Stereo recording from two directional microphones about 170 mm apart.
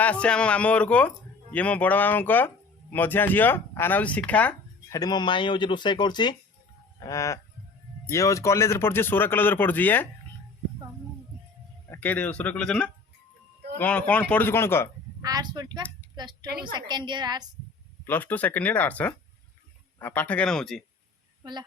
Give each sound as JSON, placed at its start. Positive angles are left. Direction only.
{"t": 0.0, "sound": "speech", "side_deg": 10}
{"t": 4.9, "sound": "speech", "side_deg": 25}
{"t": 11.9, "sound": "speech", "side_deg": 10}
{"t": 15.2, "sound": "speech", "side_deg": -20}
{"t": 16.5, "sound": "a woman's voice", "side_deg": -65}
{"t": 16.9, "sound": "speech", "side_deg": -25}
{"t": 18.0, "sound": "speech", "side_deg": 10}